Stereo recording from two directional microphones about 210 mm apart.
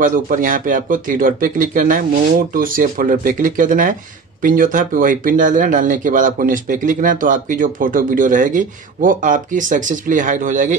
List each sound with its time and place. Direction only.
0.0 s speech: 40° right (ahead or behind)